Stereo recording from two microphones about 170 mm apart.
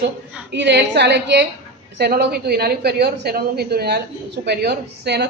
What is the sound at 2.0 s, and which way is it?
A woman's voice, 70° right (ahead or behind).